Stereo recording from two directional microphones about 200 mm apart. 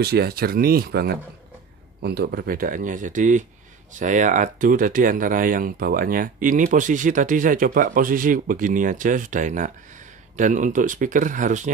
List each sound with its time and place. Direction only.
0.0 s speech: 50° right (ahead or behind)